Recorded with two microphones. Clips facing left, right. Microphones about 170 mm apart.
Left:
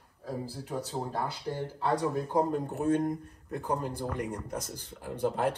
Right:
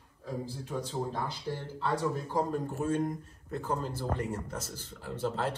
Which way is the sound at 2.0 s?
15° left (ahead or behind).